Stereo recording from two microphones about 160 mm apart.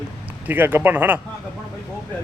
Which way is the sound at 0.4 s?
10° right (ahead or behind).